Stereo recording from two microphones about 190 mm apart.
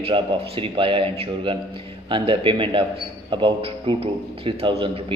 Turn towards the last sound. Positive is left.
turn(degrees=-25)  # may be behind; listen again after turning